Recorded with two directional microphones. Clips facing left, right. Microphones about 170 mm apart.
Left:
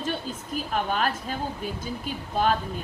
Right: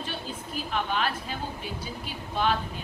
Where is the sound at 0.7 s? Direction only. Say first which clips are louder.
Left 2 dB; 45° left (ahead or behind).